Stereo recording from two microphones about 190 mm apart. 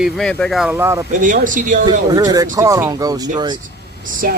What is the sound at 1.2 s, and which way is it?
Speech, 45° right (ahead or behind).